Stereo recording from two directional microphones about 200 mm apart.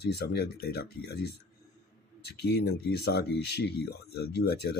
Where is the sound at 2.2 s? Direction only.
55° left (ahead or behind).